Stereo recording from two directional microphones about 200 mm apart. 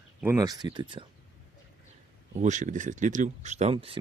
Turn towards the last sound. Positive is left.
turn(degrees=-25)  # may be behind; listen again after turning